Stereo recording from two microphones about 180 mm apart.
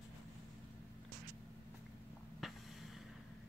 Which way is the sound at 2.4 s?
Centre (ahead or behind).